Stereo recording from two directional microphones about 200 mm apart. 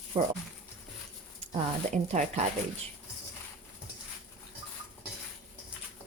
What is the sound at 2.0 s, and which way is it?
Speech, 35° right (ahead or behind).